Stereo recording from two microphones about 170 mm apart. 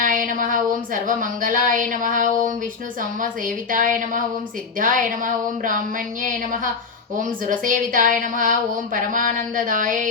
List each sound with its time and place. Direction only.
0.0 s a sound: 50° right (ahead or behind)
1.0 s a woman's voice: 50° right (ahead or behind)
3.7 s a woman's voice: 50° right (ahead or behind)
7.2 s a woman's voice: 50° right (ahead or behind)